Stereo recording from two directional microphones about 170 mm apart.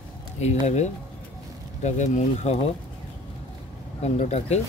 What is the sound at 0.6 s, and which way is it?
Speech, 40° left (ahead or behind).